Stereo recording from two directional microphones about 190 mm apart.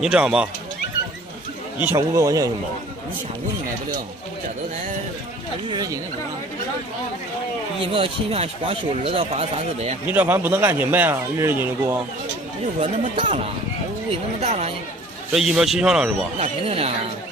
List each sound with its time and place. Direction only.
0.0 s speech: 5° right (ahead or behind)
1.9 s speech: 15° right (ahead or behind)
5.7 s speech: 20° right (ahead or behind)
7.9 s speech: 30° right (ahead or behind)
10.0 s speech: 10° right (ahead or behind)
12.8 s speech: 25° right (ahead or behind)
15.3 s speech: centre (ahead or behind)
16.3 s speech: 30° right (ahead or behind)